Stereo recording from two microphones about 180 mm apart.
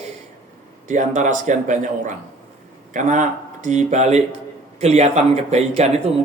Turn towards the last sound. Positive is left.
turn(degrees=-35)  # may be behind; listen again after turning